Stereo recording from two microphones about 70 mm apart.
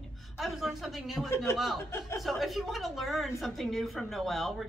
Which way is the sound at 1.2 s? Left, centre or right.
Left.